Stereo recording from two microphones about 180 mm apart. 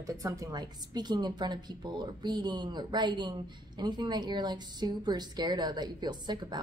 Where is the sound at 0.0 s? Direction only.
20° right (ahead or behind).